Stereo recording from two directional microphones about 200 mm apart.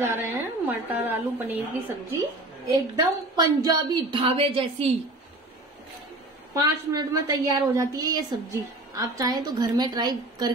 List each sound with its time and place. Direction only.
0.0 s a woman's voice: 10° right (ahead or behind)
2.6 s a woman's voice: 20° right (ahead or behind)
6.5 s a woman's voice: 20° right (ahead or behind)